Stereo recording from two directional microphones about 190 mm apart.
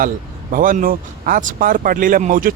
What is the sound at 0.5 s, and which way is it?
A man's voice, 45° right (ahead or behind).